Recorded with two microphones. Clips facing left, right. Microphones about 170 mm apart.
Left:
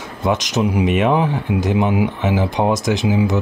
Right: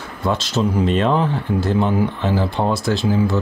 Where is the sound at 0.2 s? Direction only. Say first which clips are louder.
Left 2 dB; 15° left (ahead or behind).